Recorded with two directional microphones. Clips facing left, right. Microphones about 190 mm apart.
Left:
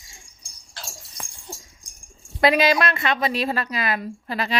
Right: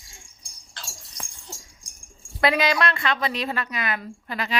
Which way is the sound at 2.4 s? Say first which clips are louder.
Left 3 dB; 25° left (ahead or behind).